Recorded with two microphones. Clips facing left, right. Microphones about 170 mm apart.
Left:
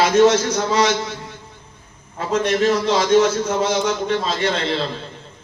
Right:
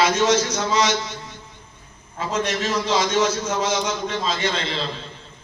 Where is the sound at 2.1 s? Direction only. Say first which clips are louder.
Left 5 dB; 55° left (ahead or behind).